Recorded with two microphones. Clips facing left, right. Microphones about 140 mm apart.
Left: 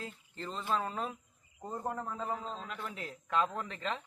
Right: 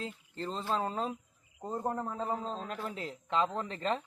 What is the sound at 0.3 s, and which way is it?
A man's voice, 35° right (ahead or behind).